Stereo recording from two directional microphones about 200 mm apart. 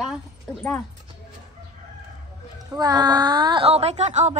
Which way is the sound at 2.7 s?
20° right (ahead or behind).